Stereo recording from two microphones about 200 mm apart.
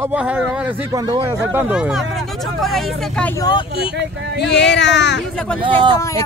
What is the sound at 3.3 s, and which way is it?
Speech, 20° left (ahead or behind).